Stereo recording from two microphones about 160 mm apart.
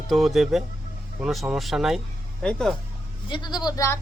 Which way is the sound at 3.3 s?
30° left (ahead or behind).